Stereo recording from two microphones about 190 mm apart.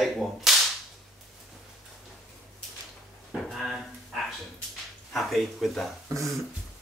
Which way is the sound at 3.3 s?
Centre (ahead or behind).